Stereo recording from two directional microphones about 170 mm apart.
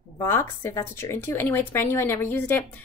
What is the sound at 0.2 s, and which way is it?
A woman's voice, 15° left (ahead or behind).